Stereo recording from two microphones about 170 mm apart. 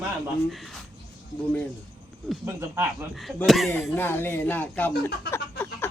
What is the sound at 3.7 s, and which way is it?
A man's voice, 10° left (ahead or behind).